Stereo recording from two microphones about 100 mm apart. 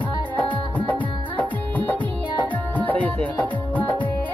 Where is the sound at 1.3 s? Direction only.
15° left (ahead or behind).